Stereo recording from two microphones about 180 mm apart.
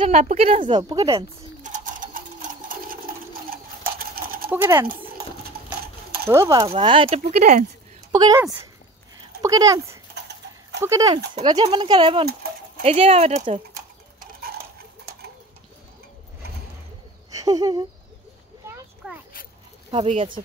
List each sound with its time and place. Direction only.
0.0 s speech: 40° right (ahead or behind)
0.7 s speech: 25° right (ahead or behind)
1.6 s bird: 45° right (ahead or behind)
4.0 s a sound: 55° right (ahead or behind)
4.5 s speech: 10° right (ahead or behind)
6.2 s speech: 15° right (ahead or behind); by 7.6 s 40° right (ahead or behind)
8.1 s speech: 20° right (ahead or behind)
10.1 s horse: 70° right (ahead or behind)
10.8 s speech: 20° right (ahead or behind); by 13.6 s 35° right (ahead or behind)
17.3 s a sound: 20° right (ahead or behind)
19.0 s a sound: 5° right (ahead or behind)
19.9 s speech: 30° right (ahead or behind)